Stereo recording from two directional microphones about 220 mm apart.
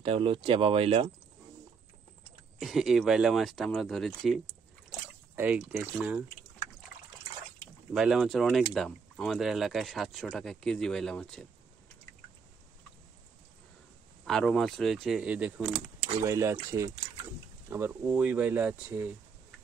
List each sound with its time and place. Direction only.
0.0 s speech: 25° right (ahead or behind)
2.6 s speech: centre (ahead or behind)
7.9 s speech: centre (ahead or behind)
14.2 s speech: centre (ahead or behind)
17.6 s speech: 10° right (ahead or behind)